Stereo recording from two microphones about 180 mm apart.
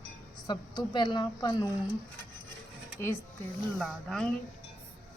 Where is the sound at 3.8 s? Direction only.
5° left (ahead or behind).